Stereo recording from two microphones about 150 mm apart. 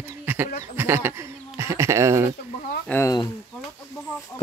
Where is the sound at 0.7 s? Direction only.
15° right (ahead or behind).